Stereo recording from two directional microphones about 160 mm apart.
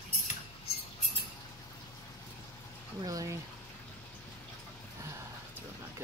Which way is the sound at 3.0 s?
20° right (ahead or behind).